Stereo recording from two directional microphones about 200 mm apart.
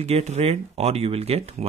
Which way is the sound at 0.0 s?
35° right (ahead or behind).